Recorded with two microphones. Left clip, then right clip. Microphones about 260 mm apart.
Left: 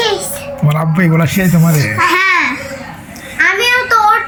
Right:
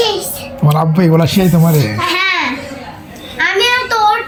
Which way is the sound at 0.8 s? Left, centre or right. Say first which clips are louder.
Right 3 dB; centre.